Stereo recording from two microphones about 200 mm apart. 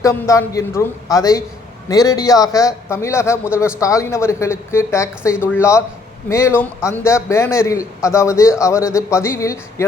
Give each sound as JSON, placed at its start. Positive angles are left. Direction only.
{"t": 0.0, "sound": "a man's voice", "side_deg": 15}